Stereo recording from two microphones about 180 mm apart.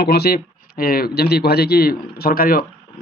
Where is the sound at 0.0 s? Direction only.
65° left (ahead or behind).